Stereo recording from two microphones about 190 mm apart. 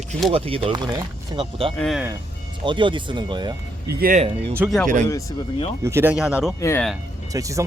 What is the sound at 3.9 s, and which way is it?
Speech, 50° right (ahead or behind).